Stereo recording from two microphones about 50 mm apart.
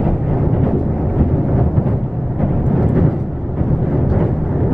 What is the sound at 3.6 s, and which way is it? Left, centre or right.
Music, centre.